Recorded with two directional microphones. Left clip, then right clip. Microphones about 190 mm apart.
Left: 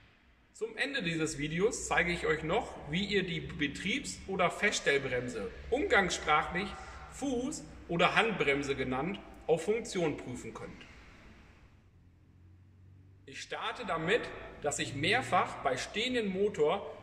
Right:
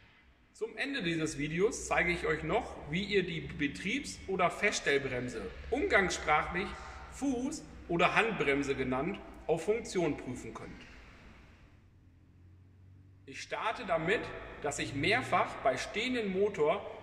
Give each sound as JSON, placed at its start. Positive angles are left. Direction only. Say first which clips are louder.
{"t": 0.6, "sound": "a man's voice", "louder": "left 2 dB", "side_deg": -15}
{"t": 13.3, "sound": "a man's voice", "louder": "right 2 dB", "side_deg": -15}